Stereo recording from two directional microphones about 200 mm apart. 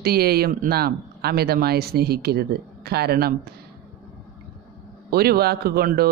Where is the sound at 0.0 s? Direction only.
50° right (ahead or behind).